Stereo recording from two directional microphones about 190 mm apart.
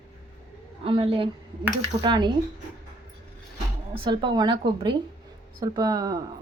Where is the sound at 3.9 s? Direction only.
25° right (ahead or behind).